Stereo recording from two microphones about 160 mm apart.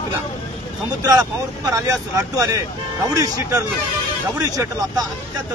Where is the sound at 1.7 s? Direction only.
20° right (ahead or behind).